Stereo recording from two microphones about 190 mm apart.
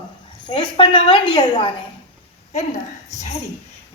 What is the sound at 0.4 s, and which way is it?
A woman's voice, 25° left (ahead or behind).